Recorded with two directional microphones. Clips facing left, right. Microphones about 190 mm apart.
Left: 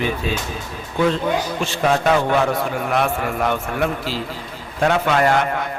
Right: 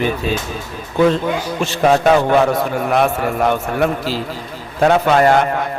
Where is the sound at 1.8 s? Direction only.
40° right (ahead or behind).